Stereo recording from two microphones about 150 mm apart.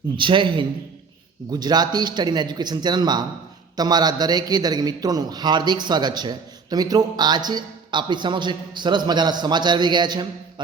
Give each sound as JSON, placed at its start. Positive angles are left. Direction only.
{"t": 0.2, "sound": "a man's voice", "side_deg": -35}